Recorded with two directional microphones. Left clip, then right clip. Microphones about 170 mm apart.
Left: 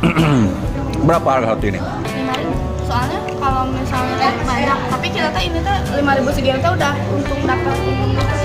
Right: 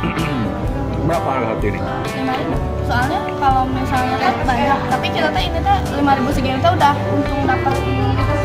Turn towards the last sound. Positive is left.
turn(degrees=35)  # may be behind; listen again after turning